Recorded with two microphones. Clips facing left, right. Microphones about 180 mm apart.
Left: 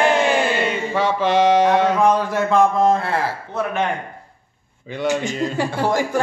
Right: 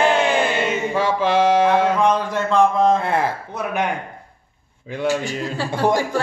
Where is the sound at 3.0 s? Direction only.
20° right (ahead or behind).